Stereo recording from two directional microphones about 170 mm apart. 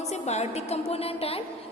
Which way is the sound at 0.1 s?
40° left (ahead or behind).